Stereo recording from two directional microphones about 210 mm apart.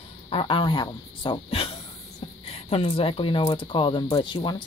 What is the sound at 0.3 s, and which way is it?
A man's voice, 25° left (ahead or behind).